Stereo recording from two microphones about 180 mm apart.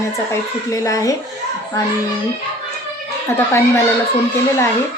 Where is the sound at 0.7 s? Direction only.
15° left (ahead or behind).